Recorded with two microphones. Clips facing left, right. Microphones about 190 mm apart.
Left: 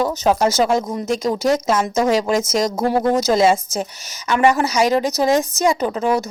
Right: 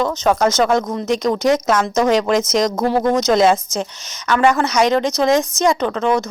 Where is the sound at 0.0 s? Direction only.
10° left (ahead or behind).